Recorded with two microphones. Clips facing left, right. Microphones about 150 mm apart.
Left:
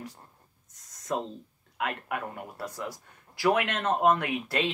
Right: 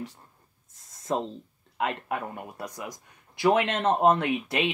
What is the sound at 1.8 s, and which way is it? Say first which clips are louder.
Speech: right 3 dB; 25° right (ahead or behind).